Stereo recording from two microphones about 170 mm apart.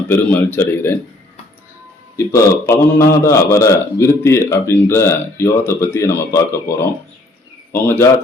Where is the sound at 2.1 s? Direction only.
15° left (ahead or behind).